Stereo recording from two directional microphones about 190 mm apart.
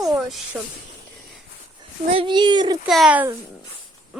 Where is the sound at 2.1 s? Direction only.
25° right (ahead or behind).